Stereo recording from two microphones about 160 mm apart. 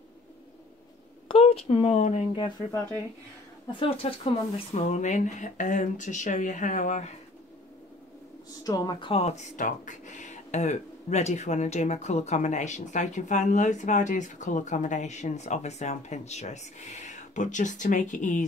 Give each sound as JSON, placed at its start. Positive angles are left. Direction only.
{"t": 1.3, "sound": "speech", "side_deg": 40}
{"t": 3.8, "sound": "speech", "side_deg": 35}
{"t": 4.7, "sound": "speech", "side_deg": 45}
{"t": 8.5, "sound": "speech", "side_deg": 25}